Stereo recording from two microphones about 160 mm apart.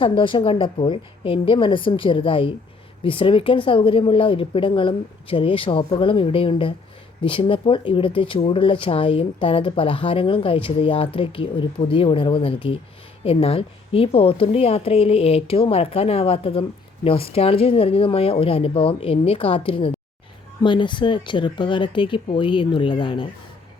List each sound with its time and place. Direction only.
0.0 s a woman's voice: 30° left (ahead or behind)